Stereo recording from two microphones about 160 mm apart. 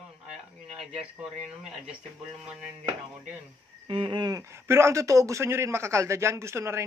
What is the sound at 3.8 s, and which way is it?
Speech, 35° right (ahead or behind).